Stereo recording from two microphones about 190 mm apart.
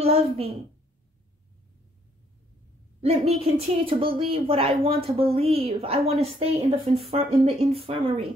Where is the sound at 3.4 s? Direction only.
30° right (ahead or behind).